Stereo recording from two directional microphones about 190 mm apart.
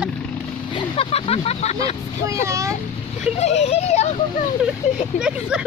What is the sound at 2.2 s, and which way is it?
Speech, 15° right (ahead or behind).